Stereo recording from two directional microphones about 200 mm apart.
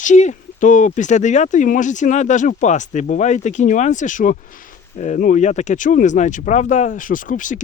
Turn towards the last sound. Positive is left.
turn(degrees=40)  # may be behind; listen again after turning